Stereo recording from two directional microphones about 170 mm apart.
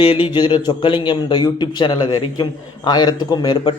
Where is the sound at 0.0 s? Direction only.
35° left (ahead or behind).